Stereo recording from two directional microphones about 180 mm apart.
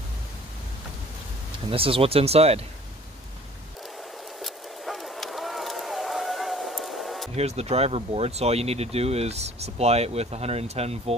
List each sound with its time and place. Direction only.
1.7 s speech: 30° right (ahead or behind)
4.4 s a sound: centre (ahead or behind)
7.3 s speech: 35° right (ahead or behind)